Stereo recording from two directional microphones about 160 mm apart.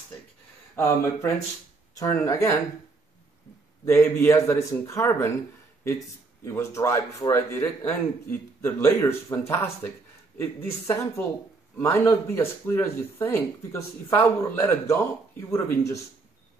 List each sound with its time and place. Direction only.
0.7 s speech: 15° left (ahead or behind)
3.8 s speech: 15° left (ahead or behind)